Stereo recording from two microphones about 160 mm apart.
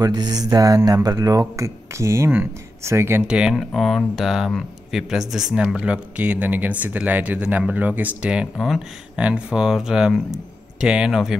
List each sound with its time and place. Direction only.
0.0 s speech: 25° right (ahead or behind); by 11.3 s centre (ahead or behind)